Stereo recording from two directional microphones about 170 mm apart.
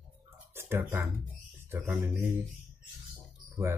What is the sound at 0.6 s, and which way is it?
Speech, 15° right (ahead or behind).